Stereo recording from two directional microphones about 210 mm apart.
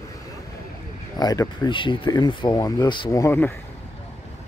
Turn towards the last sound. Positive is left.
turn(degrees=10)  # may be behind; listen again after turning